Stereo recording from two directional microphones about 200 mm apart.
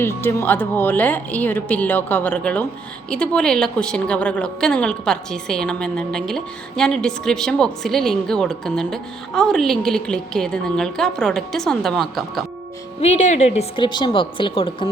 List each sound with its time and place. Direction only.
0.0 s a woman's voice: 10° left (ahead or behind)
13.0 s a woman's voice: 35° left (ahead or behind)